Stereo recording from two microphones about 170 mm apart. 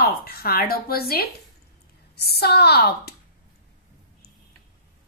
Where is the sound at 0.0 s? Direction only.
65° left (ahead or behind).